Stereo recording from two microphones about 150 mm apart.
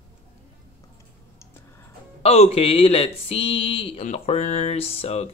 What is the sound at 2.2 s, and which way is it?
Speech, 40° left (ahead or behind).